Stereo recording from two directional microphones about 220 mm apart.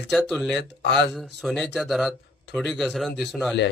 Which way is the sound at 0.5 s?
50° left (ahead or behind).